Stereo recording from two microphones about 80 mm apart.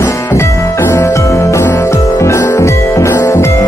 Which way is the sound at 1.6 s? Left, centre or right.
Left.